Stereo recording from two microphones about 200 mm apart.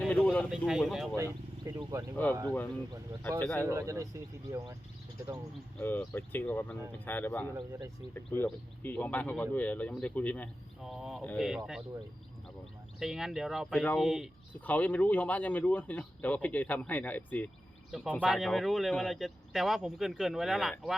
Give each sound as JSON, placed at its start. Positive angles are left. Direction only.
{"t": 0.0, "sound": "a sound", "side_deg": 5}
{"t": 0.5, "sound": "speech", "side_deg": -5}
{"t": 1.2, "sound": "speech", "side_deg": -15}
{"t": 3.2, "sound": "speech", "side_deg": 5}
{"t": 3.7, "sound": "a man's voice", "side_deg": -15}
{"t": 5.8, "sound": "speech", "side_deg": 10}
{"t": 7.5, "sound": "a man's voice", "side_deg": -15}
{"t": 8.1, "sound": "speech", "side_deg": 10}
{"t": 13.0, "sound": "speech", "side_deg": 0}